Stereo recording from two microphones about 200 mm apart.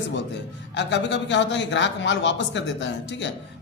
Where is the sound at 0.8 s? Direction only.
60° left (ahead or behind).